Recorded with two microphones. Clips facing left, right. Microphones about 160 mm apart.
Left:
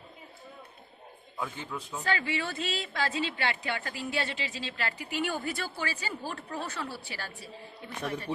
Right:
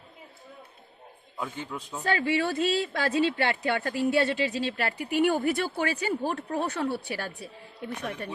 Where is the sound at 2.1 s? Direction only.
55° right (ahead or behind).